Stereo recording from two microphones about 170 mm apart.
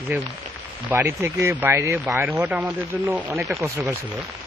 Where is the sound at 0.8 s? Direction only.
15° right (ahead or behind).